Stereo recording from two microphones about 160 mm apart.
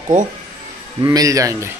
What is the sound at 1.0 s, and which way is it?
Speech, 20° right (ahead or behind).